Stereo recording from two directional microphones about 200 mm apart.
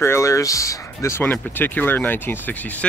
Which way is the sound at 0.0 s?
15° left (ahead or behind).